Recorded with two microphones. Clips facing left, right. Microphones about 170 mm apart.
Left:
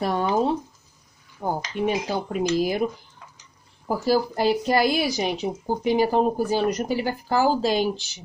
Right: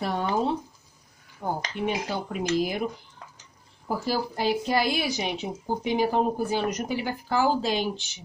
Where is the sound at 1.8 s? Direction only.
40° left (ahead or behind).